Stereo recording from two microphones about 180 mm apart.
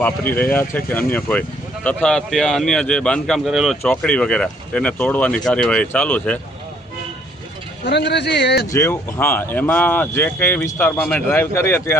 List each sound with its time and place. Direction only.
0.0 s speech: 10° left (ahead or behind)
7.9 s speech: 70° left (ahead or behind)
8.7 s speech: 15° left (ahead or behind)